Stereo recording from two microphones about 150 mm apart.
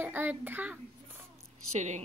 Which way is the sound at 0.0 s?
15° right (ahead or behind).